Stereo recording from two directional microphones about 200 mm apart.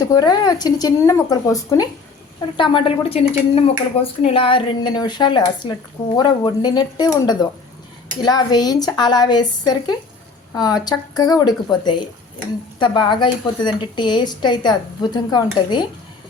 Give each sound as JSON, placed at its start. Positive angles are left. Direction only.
{"t": 0.0, "sound": "a woman's voice", "side_deg": 20}